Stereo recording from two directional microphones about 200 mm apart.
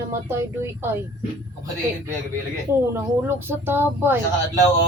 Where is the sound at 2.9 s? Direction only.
10° right (ahead or behind).